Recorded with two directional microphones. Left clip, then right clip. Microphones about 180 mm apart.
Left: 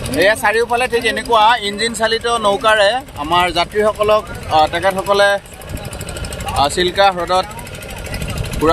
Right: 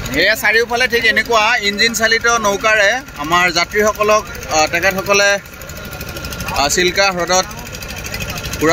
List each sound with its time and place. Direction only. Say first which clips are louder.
0.2 s speech: even; 15° right (ahead or behind)
6.5 s speech: right 1 dB; 15° right (ahead or behind)